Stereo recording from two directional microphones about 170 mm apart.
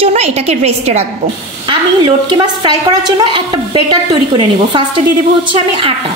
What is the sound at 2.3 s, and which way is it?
A woman's voice, 25° right (ahead or behind).